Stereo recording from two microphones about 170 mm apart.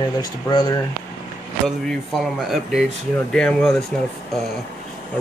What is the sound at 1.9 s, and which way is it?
Speech, centre (ahead or behind).